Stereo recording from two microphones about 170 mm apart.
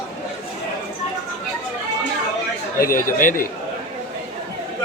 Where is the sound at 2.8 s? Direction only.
55° left (ahead or behind).